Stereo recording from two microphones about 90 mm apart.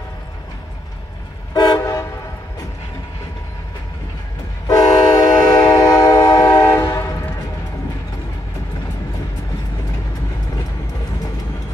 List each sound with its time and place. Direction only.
1.5 s vehicle: 45° left (ahead or behind)
4.6 s train: 45° left (ahead or behind)
6.8 s train: 35° left (ahead or behind)